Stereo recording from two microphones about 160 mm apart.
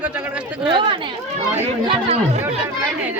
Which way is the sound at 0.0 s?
10° right (ahead or behind).